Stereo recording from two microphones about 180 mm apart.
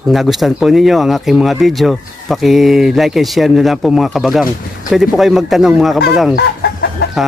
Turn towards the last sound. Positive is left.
turn(degrees=70)  # may be behind; listen again after turning